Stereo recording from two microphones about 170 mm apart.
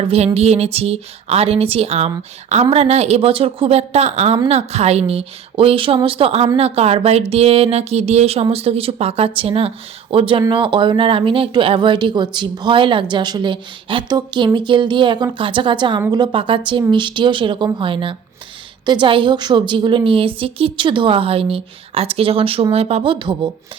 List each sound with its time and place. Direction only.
0.0 s a woman's voice: 35° right (ahead or behind)